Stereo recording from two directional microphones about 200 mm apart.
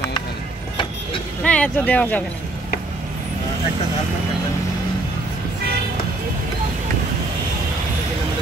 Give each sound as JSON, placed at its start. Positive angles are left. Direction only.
{"t": 1.4, "sound": "speech", "side_deg": 5}